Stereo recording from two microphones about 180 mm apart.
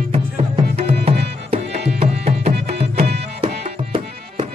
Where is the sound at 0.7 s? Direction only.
35° right (ahead or behind).